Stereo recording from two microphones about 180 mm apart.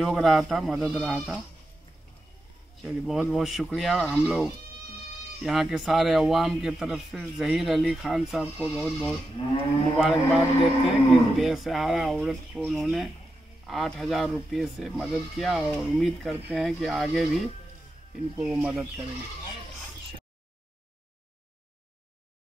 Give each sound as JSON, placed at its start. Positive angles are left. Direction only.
{"t": 0.0, "sound": "a man's voice", "side_deg": 0}
{"t": 2.8, "sound": "a man's voice", "side_deg": 0}
{"t": 9.4, "sound": "moo", "side_deg": 35}
{"t": 9.9, "sound": "a man's voice", "side_deg": -5}
{"t": 18.3, "sound": "speech", "side_deg": -25}
{"t": 18.6, "sound": "speech", "side_deg": -5}